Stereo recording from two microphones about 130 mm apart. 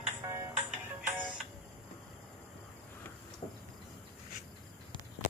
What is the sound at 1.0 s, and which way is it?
Music, 5° right (ahead or behind).